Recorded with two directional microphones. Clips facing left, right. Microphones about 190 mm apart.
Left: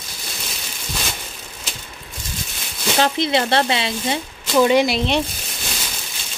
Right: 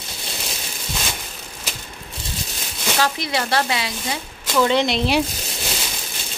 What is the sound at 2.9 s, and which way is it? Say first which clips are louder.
Speech: left 4 dB; 25° left (ahead or behind).